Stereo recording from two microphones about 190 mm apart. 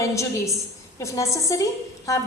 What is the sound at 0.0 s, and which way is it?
A woman's voice, 15° left (ahead or behind).